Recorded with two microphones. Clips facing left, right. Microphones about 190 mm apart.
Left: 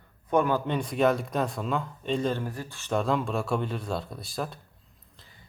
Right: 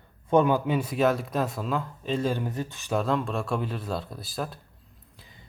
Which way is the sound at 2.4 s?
20° right (ahead or behind).